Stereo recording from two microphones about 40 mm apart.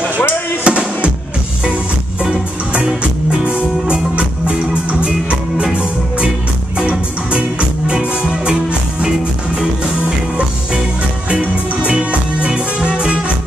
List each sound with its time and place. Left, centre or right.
0.7 s music: right
2.7 s music: right
5.6 s music: right
7.8 s music: centre
9.6 s music: right